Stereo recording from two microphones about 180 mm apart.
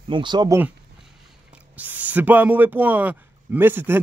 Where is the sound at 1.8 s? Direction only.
10° right (ahead or behind).